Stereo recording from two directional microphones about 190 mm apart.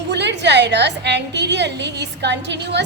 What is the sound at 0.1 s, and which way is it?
A woman's voice, 65° right (ahead or behind).